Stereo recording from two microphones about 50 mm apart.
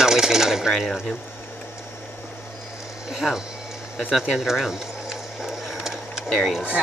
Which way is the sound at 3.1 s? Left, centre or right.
Centre.